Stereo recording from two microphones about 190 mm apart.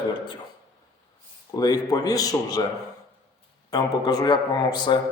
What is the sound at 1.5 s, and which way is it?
A man's voice, 20° left (ahead or behind).